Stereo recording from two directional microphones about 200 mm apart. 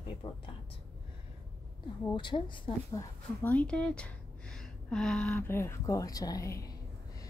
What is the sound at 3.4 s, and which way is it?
A woman's voice, 5° left (ahead or behind).